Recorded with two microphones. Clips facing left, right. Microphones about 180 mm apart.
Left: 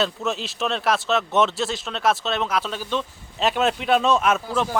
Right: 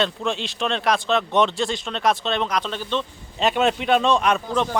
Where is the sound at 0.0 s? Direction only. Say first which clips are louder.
Right 1 dB; 5° left (ahead or behind).